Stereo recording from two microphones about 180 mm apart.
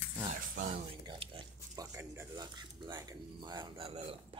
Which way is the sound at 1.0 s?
30° right (ahead or behind).